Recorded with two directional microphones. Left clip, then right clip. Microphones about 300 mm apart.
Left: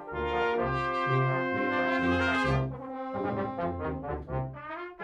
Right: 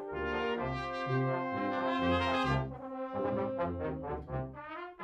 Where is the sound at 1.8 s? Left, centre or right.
Centre.